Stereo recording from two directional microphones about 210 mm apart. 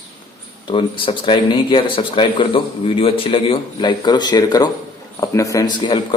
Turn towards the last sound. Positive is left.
turn(degrees=20)  # may be behind; listen again after turning